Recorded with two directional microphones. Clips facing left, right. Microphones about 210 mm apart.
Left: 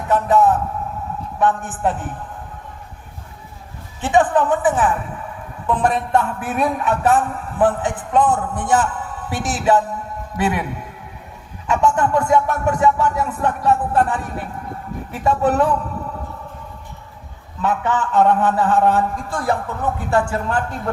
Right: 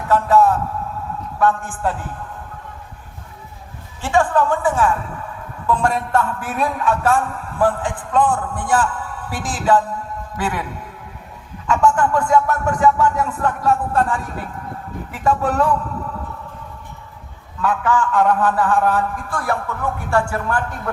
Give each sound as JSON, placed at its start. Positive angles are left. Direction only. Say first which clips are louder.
{"t": 0.1, "sound": "a man's voice", "louder": "even", "side_deg": 20}
{"t": 4.0, "sound": "a man's voice", "louder": "left 1 dB", "side_deg": 20}
{"t": 11.7, "sound": "a man's voice", "louder": "even", "side_deg": 20}
{"t": 17.6, "sound": "a man's voice", "louder": "right 1 dB", "side_deg": 20}